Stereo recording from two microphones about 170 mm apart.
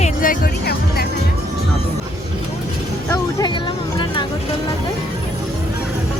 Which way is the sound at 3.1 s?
20° left (ahead or behind).